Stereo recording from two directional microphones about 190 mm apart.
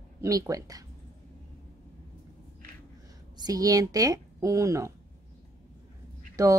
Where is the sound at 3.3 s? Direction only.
20° right (ahead or behind).